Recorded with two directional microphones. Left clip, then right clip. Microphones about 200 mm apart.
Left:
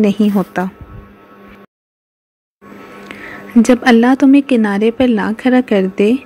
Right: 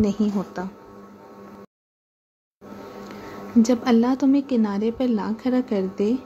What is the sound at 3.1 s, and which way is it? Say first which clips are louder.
Speech: left 8 dB; 25° left (ahead or behind).